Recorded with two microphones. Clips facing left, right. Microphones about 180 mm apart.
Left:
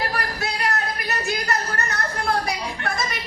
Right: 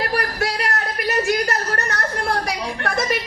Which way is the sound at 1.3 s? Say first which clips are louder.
Right 4 dB; 65° right (ahead or behind).